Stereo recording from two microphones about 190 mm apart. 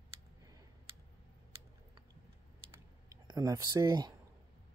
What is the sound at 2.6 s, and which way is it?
Typing, 15° right (ahead or behind).